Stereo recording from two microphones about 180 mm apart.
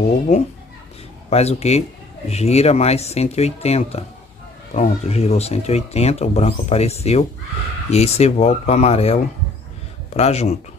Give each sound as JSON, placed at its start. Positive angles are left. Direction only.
{"t": 0.3, "sound": "speech", "side_deg": 40}